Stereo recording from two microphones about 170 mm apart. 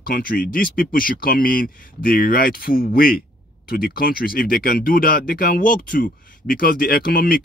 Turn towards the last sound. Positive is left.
turn(degrees=60)  # may be behind; listen again after turning